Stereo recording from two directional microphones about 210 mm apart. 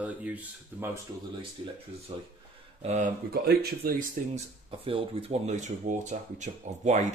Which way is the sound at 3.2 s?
45° right (ahead or behind).